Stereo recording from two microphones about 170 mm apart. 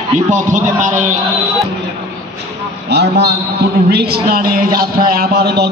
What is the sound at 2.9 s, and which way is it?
A man's voice, 75° right (ahead or behind).